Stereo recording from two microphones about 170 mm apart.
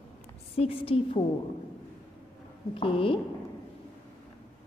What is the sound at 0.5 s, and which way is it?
Speech, 35° left (ahead or behind).